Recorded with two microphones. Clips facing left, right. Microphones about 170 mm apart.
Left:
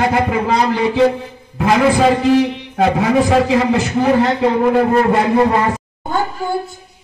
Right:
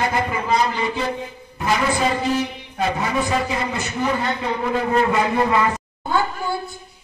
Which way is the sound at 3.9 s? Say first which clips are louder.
Left 7 dB; 65° left (ahead or behind).